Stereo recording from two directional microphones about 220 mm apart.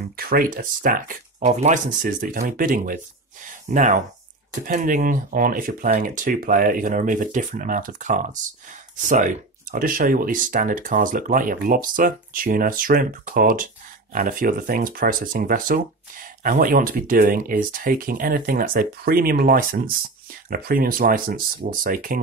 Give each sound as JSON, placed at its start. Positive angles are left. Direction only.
{"t": 0.2, "sound": "speech", "side_deg": -40}